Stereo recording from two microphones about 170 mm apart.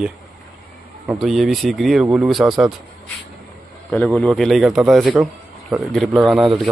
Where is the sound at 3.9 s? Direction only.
5° left (ahead or behind).